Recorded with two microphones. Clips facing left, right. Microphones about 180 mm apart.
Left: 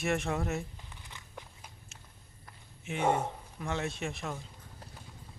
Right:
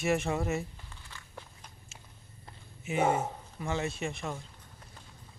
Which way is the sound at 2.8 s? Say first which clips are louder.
Right 2 dB; 5° right (ahead or behind).